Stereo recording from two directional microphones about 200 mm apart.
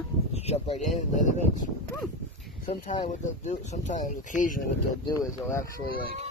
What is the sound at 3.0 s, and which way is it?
Speech, 35° left (ahead or behind).